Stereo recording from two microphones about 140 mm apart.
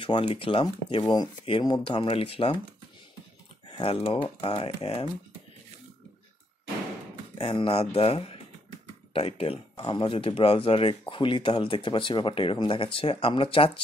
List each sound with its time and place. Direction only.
0.0 s speech: 40° left (ahead or behind)
3.6 s speech: 40° left (ahead or behind)
7.3 s speech: 40° left (ahead or behind)